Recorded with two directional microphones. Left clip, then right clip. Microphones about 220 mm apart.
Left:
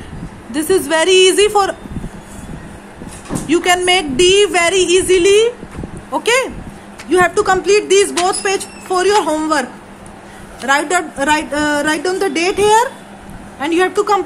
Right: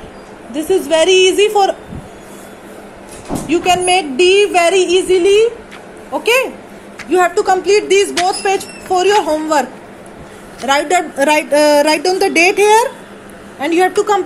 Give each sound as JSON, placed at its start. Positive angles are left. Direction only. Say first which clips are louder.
{"t": 0.5, "sound": "a woman's voice", "louder": "right 1 dB", "side_deg": 70}
{"t": 3.4, "sound": "a woman's voice", "louder": "even", "side_deg": 25}
{"t": 10.6, "sound": "a woman's voice", "louder": "right 1 dB", "side_deg": 5}